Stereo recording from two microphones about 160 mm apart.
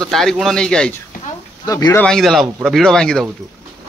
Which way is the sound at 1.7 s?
20° left (ahead or behind).